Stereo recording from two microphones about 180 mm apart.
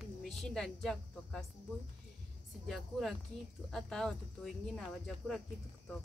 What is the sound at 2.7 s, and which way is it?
Speech, centre (ahead or behind).